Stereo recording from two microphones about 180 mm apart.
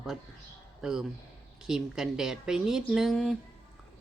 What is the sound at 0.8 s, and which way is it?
Speech, 5° right (ahead or behind).